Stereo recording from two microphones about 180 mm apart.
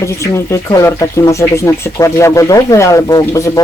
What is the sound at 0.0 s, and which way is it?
Speech, 15° left (ahead or behind).